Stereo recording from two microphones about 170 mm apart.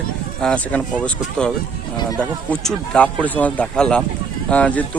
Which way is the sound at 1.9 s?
25° left (ahead or behind).